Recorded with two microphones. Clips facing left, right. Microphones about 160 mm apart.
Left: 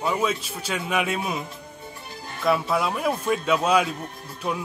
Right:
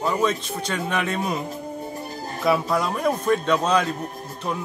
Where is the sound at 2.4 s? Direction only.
Centre (ahead or behind).